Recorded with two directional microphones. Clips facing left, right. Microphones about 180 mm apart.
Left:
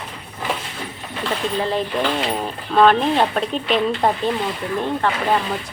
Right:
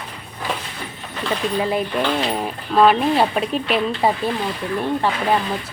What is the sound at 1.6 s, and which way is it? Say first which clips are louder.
Speech: even; 10° right (ahead or behind).